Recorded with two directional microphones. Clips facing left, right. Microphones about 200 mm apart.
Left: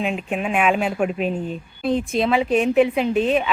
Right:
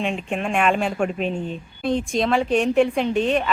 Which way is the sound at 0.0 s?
5° left (ahead or behind).